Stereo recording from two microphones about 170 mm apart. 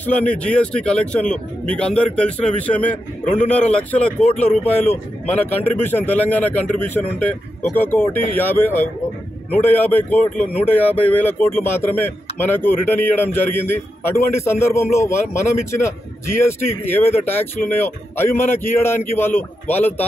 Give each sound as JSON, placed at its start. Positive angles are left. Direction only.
{"t": 0.0, "sound": "speech", "side_deg": 10}